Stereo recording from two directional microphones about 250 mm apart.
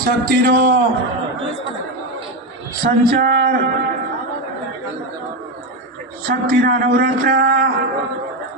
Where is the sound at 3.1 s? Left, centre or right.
Right.